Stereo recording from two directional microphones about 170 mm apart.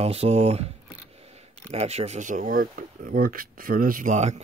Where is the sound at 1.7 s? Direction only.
40° right (ahead or behind).